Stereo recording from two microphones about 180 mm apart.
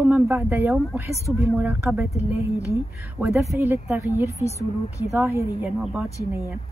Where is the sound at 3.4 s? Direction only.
15° right (ahead or behind).